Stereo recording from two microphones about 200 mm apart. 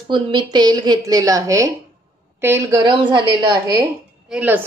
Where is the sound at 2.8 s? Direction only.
25° right (ahead or behind).